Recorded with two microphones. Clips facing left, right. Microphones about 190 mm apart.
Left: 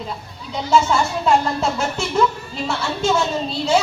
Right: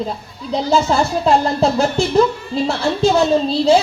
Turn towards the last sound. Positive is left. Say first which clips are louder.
# right 7 dB
turn(degrees=-35)  # may be behind; listen again after turning